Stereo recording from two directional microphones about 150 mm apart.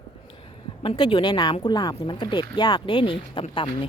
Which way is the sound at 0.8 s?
30° left (ahead or behind).